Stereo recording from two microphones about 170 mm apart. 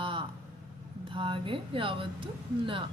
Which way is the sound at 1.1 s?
30° right (ahead or behind).